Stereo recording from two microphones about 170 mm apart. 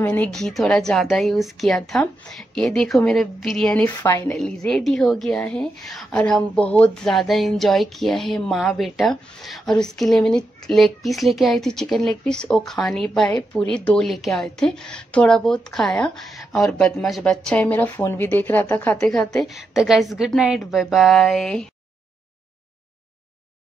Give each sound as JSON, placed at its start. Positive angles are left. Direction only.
{"t": 0.0, "sound": "a woman's voice", "side_deg": 10}
{"t": 3.9, "sound": "a woman's voice", "side_deg": 20}
{"t": 4.6, "sound": "a woman's voice", "side_deg": 5}